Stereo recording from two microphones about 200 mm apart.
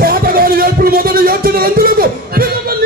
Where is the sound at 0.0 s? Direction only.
50° right (ahead or behind).